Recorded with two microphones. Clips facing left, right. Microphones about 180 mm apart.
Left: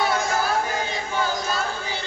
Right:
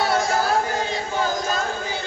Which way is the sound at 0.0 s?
40° right (ahead or behind).